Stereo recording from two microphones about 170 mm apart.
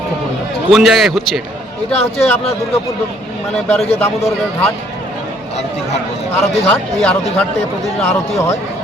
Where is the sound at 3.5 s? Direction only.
Centre (ahead or behind).